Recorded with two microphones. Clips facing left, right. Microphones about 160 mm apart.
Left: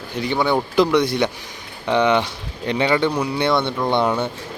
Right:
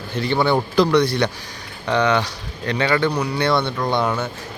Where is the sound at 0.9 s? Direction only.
20° left (ahead or behind).